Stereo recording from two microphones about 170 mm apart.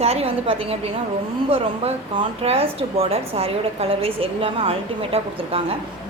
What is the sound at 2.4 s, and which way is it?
A woman's voice, 35° right (ahead or behind).